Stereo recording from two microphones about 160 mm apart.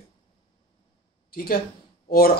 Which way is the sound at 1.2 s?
65° left (ahead or behind).